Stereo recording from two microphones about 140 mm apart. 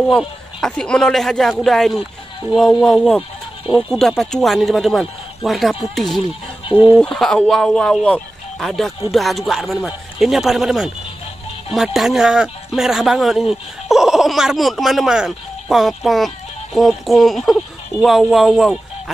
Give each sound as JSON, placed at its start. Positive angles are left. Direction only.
{"t": 0.1, "sound": "a man's voice", "side_deg": 5}
{"t": 6.6, "sound": "speech", "side_deg": 40}
{"t": 7.0, "sound": "a man's voice", "side_deg": 5}